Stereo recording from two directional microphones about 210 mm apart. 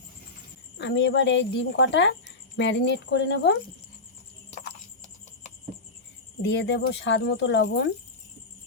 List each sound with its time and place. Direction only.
0.8 s speech: 55° left (ahead or behind)
6.4 s speech: 55° left (ahead or behind)